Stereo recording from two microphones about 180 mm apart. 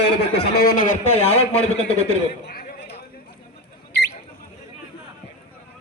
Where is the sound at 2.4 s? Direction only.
65° left (ahead or behind).